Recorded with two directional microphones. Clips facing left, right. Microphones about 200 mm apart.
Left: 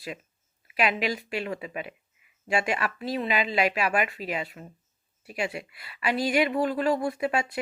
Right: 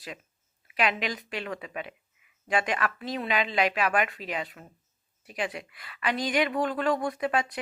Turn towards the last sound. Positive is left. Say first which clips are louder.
# left 1 dB
turn(degrees=10)  # may be behind; listen again after turning